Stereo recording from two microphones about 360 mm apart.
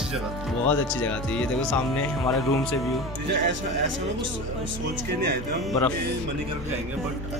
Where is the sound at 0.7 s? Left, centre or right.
Centre.